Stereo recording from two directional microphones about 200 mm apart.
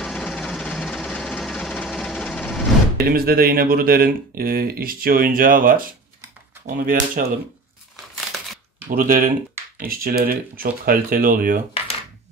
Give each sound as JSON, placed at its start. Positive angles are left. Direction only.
{"t": 0.0, "sound": "a sound", "side_deg": 0}
{"t": 3.0, "sound": "speech", "side_deg": -50}
{"t": 7.9, "sound": "crumpling", "side_deg": 0}
{"t": 8.8, "sound": "speech", "side_deg": -45}